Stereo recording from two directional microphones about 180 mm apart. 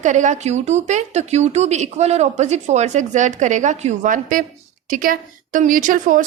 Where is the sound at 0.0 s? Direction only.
40° right (ahead or behind).